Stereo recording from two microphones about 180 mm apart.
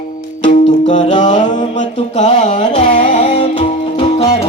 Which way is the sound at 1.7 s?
40° left (ahead or behind).